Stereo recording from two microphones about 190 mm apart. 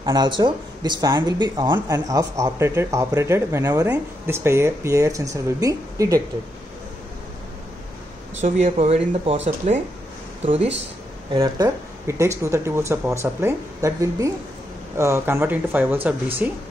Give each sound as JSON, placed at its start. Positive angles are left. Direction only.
{"t": 0.0, "sound": "speech", "side_deg": -25}
{"t": 8.4, "sound": "speech", "side_deg": -35}
{"t": 11.3, "sound": "speech", "side_deg": -20}